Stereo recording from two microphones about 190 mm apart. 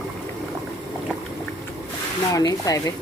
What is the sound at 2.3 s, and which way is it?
Speech, 20° left (ahead or behind).